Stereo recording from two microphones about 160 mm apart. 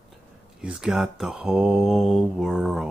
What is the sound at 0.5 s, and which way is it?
Mantra, 5° right (ahead or behind).